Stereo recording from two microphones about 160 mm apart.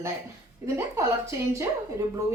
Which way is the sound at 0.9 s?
20° right (ahead or behind).